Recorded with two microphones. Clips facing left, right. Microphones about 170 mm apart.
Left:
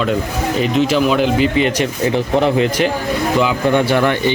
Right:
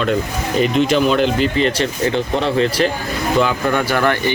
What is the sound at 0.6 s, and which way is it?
A man's voice, 5° left (ahead or behind).